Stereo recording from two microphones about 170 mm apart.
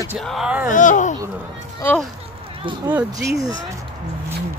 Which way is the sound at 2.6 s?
30° right (ahead or behind).